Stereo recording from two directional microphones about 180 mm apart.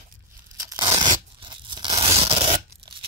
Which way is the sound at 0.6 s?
20° right (ahead or behind).